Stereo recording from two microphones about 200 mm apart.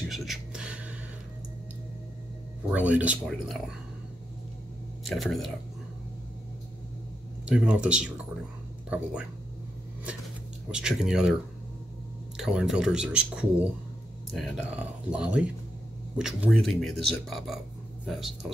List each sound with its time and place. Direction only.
0.1 s a sound: centre (ahead or behind)
2.7 s speech: 5° right (ahead or behind)
5.0 s speech: centre (ahead or behind)
7.4 s speech: 5° right (ahead or behind)
10.7 s speech: 5° right (ahead or behind)
12.4 s speech: 5° right (ahead or behind)